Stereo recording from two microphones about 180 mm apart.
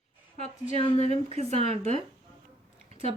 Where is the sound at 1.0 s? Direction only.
35° right (ahead or behind).